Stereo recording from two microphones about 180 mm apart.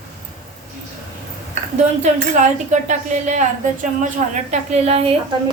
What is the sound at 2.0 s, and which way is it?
Speech, 40° right (ahead or behind).